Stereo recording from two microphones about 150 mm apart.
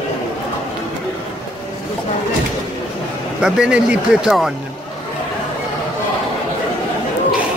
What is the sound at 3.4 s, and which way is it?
Speech, 5° right (ahead or behind).